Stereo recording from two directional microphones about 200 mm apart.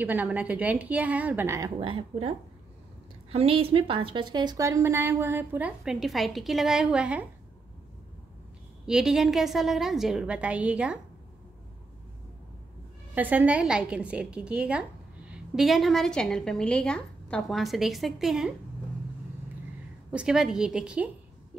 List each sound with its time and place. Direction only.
0.0 s a woman's voice: 10° right (ahead or behind)
1.8 s a woman's voice: 25° right (ahead or behind); by 7.2 s 5° right (ahead or behind)
8.8 s a woman's voice: 5° right (ahead or behind)
13.1 s a woman's voice: 10° right (ahead or behind)
20.1 s a woman's voice: 5° right (ahead or behind)